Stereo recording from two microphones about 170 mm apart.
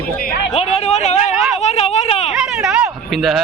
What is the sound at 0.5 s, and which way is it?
Speech, 40° left (ahead or behind).